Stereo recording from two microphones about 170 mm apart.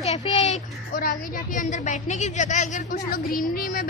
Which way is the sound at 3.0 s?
60° left (ahead or behind).